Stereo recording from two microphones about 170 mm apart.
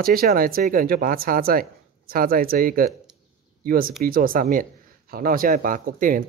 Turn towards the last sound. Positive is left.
turn(degrees=-55)  # may be behind; listen again after turning